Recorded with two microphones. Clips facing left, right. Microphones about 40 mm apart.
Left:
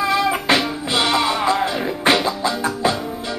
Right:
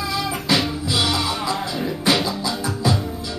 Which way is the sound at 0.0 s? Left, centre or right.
Left.